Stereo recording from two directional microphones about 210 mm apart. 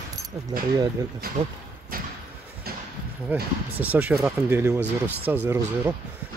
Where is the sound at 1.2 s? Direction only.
45° right (ahead or behind).